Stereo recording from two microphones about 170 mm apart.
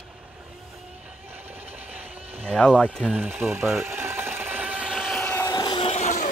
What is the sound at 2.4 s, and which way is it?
Speech, 5° left (ahead or behind).